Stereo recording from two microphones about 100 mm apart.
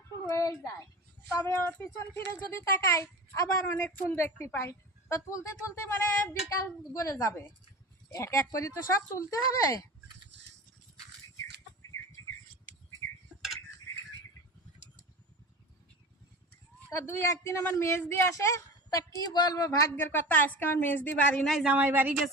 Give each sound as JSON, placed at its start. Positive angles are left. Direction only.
{"t": 0.3, "sound": "a woman's voice", "side_deg": 35}
{"t": 3.8, "sound": "speech", "side_deg": 15}
{"t": 16.9, "sound": "speech", "side_deg": 25}
{"t": 20.0, "sound": "speech", "side_deg": 20}
{"t": 21.4, "sound": "a woman's voice", "side_deg": 0}
{"t": 21.7, "sound": "speech", "side_deg": -15}